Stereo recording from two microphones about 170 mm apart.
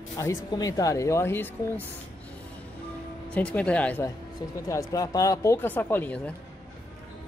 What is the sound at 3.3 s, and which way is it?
Speech, 10° left (ahead or behind).